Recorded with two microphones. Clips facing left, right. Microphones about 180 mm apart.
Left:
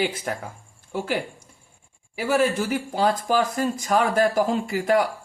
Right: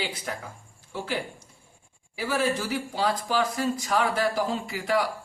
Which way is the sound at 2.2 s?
50° left (ahead or behind).